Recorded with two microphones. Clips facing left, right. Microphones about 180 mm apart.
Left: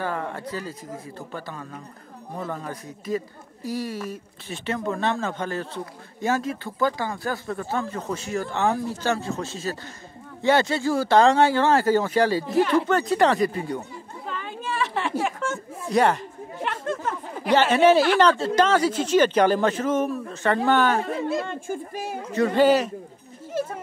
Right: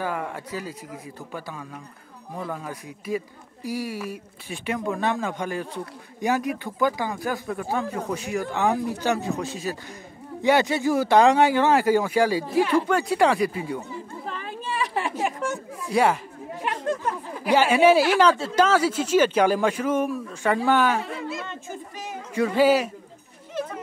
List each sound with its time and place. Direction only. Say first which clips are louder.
0.0 s a woman's voice: even; 10° right (ahead or behind)
14.8 s a sound: left 1 dB; 15° right (ahead or behind)
17.5 s a woman's voice: even; 10° right (ahead or behind)
21.5 s speech: left 6 dB; 50° left (ahead or behind)
22.3 s a woman's voice: left 1 dB; 10° right (ahead or behind)